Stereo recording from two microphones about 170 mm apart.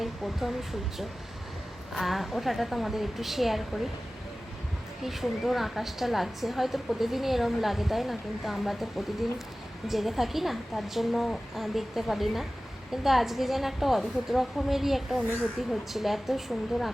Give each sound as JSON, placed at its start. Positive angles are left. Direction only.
{"t": 0.0, "sound": "a woman's voice", "side_deg": 0}
{"t": 5.0, "sound": "a woman's voice", "side_deg": 0}